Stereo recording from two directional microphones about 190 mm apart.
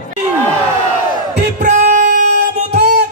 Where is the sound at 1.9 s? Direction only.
45° right (ahead or behind).